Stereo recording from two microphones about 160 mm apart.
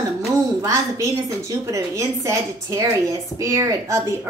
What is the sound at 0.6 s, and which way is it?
A woman's voice, 20° right (ahead or behind).